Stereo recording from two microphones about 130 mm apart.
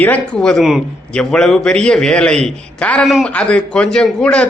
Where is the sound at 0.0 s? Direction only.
10° left (ahead or behind).